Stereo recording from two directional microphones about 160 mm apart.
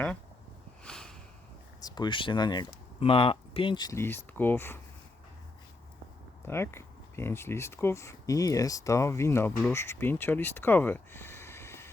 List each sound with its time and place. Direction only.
0.9 s a sound: 5° left (ahead or behind)
1.8 s speech: 30° left (ahead or behind)
6.5 s speech: 15° left (ahead or behind)